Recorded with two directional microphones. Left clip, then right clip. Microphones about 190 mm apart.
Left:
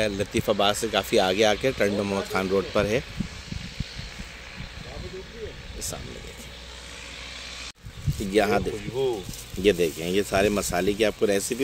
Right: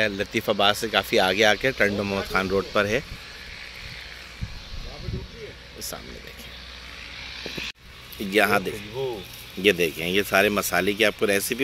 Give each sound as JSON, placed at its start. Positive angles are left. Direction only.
{"t": 0.0, "sound": "speech", "side_deg": 5}
{"t": 7.4, "sound": "a sound", "side_deg": 70}
{"t": 8.3, "sound": "speech", "side_deg": 0}